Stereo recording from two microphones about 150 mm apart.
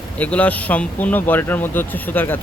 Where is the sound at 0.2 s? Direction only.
10° left (ahead or behind).